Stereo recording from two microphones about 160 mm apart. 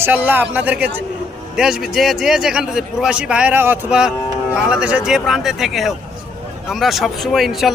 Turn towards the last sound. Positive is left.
turn(degrees=0)  # may be behind; listen again after turning